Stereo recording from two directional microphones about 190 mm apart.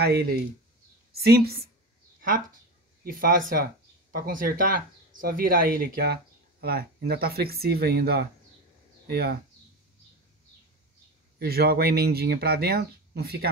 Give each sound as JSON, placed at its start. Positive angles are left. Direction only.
{"t": 0.0, "sound": "speech", "side_deg": -55}
{"t": 3.0, "sound": "speech", "side_deg": -45}
{"t": 11.3, "sound": "speech", "side_deg": -55}